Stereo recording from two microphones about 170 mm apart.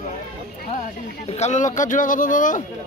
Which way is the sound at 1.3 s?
40° left (ahead or behind).